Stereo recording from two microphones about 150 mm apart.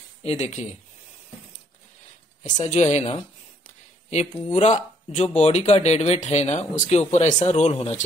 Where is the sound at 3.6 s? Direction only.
50° left (ahead or behind).